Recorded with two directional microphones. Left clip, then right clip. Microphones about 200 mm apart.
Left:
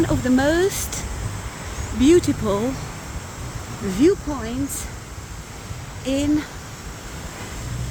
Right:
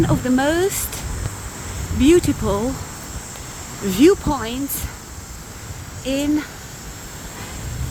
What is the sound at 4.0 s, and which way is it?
Speech, 25° right (ahead or behind).